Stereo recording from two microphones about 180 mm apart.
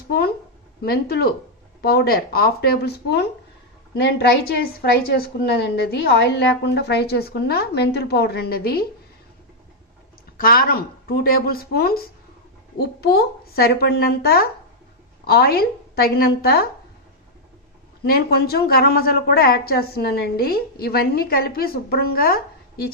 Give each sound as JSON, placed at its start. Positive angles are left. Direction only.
{"t": 0.8, "sound": "a woman's voice", "side_deg": 60}
{"t": 10.3, "sound": "a woman's voice", "side_deg": 55}
{"t": 18.0, "sound": "a woman's voice", "side_deg": 60}